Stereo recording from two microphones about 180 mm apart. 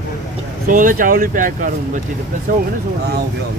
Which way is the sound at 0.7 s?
50° right (ahead or behind).